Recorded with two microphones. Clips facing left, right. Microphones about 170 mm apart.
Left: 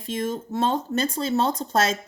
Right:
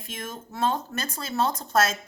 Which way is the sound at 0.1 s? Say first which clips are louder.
Left 10 dB; 30° left (ahead or behind).